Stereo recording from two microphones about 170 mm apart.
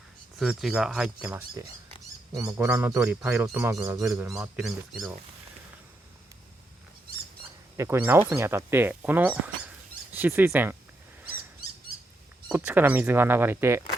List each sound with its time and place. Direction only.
0.3 s speech: centre (ahead or behind); by 4.3 s 20° right (ahead or behind)
4.3 s speech: 5° right (ahead or behind)
7.8 s speech: 15° right (ahead or behind)
12.5 s speech: 10° right (ahead or behind)